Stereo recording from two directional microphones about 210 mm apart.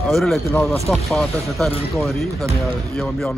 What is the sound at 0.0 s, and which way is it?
Speech, centre (ahead or behind).